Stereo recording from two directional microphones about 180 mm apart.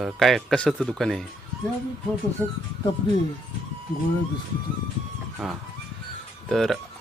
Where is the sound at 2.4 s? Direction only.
5° left (ahead or behind).